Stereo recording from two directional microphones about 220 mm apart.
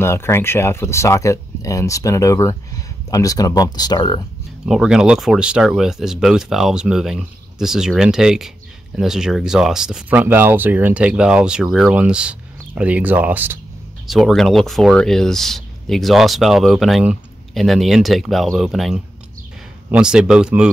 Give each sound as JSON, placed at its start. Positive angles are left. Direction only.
{"t": 0.0, "sound": "speech", "side_deg": 10}
{"t": 4.6, "sound": "speech", "side_deg": 0}